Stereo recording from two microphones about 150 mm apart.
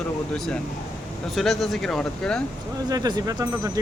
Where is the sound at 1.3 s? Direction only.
Centre (ahead or behind).